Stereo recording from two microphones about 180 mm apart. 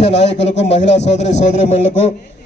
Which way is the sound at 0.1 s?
75° left (ahead or behind).